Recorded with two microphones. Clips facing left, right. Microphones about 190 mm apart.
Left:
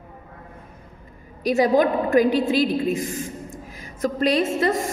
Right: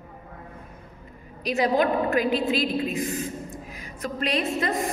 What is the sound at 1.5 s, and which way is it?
A woman's voice, 45° left (ahead or behind).